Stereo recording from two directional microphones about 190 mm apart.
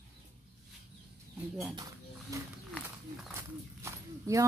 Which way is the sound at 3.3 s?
15° right (ahead or behind).